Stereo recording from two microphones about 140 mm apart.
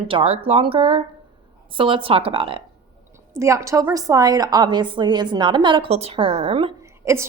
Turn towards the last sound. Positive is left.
turn(degrees=-20)  # may be behind; listen again after turning